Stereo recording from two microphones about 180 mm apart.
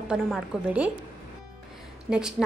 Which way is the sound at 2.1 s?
5° right (ahead or behind).